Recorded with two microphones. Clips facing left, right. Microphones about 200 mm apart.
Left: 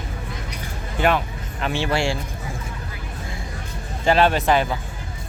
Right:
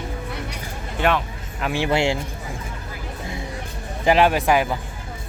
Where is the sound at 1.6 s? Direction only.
15° right (ahead or behind).